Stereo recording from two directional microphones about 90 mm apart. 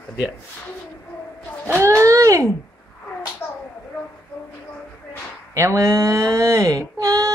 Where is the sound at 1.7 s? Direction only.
30° right (ahead or behind).